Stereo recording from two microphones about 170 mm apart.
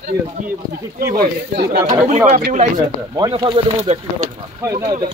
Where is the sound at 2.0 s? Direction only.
50° right (ahead or behind).